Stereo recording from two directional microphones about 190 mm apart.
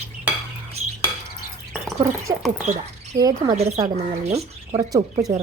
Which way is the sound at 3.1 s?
20° right (ahead or behind).